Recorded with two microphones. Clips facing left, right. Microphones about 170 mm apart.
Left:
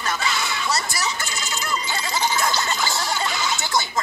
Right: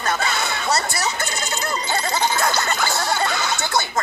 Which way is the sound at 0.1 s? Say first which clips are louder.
Right 3 dB; 55° right (ahead or behind).